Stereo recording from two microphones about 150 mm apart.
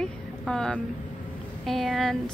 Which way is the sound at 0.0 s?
5° left (ahead or behind).